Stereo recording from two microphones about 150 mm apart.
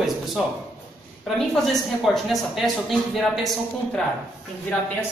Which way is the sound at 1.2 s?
Centre (ahead or behind).